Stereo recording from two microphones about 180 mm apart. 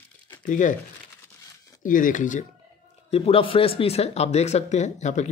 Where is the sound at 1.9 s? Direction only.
50° left (ahead or behind).